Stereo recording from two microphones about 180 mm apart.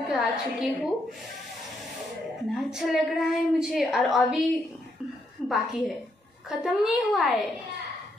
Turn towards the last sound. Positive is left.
turn(degrees=0)  # may be behind; listen again after turning